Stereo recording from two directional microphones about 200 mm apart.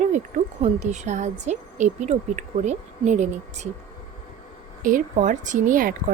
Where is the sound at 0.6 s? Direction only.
35° right (ahead or behind).